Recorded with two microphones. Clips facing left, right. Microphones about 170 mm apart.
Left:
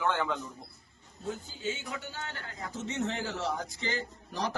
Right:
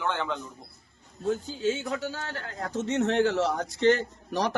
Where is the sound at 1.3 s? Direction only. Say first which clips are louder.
Right 9 dB; 85° right.